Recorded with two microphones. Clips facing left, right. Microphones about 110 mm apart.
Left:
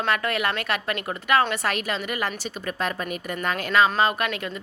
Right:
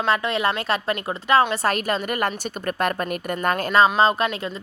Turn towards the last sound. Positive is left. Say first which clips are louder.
# right 4 dB
turn(degrees=-30)  # may be behind; listen again after turning